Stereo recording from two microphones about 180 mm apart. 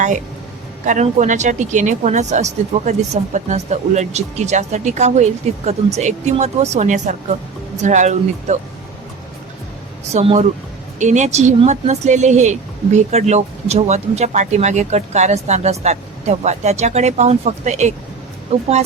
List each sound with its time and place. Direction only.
0.9 s speech: 45° right (ahead or behind)
10.1 s speech: 35° right (ahead or behind)